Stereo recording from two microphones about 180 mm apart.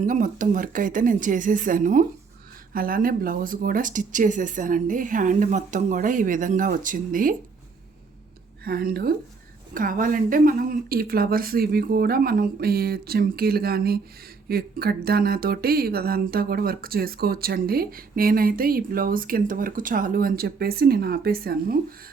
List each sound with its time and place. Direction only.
0.0 s speech: 45° right (ahead or behind)
8.6 s speech: 60° right (ahead or behind)